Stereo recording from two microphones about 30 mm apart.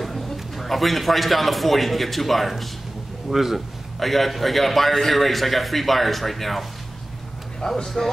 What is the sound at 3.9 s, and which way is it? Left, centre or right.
A man's voice, centre.